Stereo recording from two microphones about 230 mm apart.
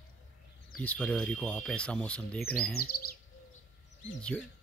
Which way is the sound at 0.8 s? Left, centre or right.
Centre.